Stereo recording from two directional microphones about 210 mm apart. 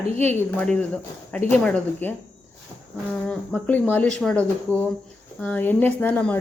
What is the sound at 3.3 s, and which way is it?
Speech, 5° left (ahead or behind).